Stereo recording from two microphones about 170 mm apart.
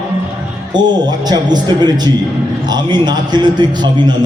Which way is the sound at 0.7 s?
25° right (ahead or behind).